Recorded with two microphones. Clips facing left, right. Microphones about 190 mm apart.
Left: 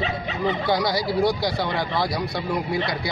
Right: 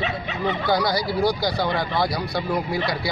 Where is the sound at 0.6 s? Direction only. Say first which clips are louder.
Right 3 dB; centre (ahead or behind).